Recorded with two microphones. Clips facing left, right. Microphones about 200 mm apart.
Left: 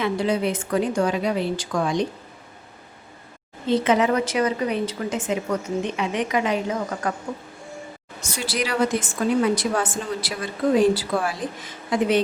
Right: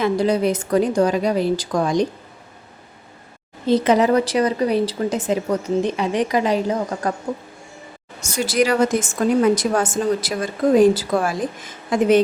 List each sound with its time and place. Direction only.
0.0 s speech: 40° right (ahead or behind)
3.7 s speech: 40° right (ahead or behind)
8.2 s a woman's voice: 45° right (ahead or behind)